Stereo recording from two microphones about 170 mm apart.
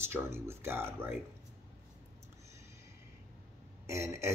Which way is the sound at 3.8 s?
15° right (ahead or behind).